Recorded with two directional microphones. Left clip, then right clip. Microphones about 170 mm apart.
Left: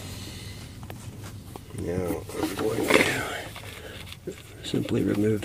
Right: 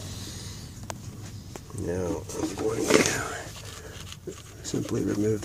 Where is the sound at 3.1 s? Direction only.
20° left (ahead or behind).